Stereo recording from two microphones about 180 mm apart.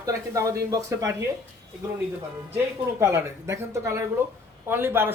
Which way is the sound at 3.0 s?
15° right (ahead or behind).